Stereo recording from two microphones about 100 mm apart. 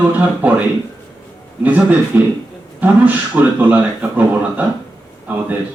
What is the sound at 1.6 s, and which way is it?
A man's voice, 15° right (ahead or behind).